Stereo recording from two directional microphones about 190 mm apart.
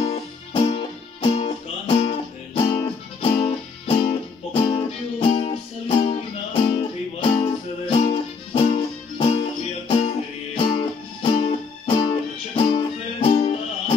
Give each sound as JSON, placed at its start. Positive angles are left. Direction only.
{"t": 0.0, "sound": "music", "side_deg": 30}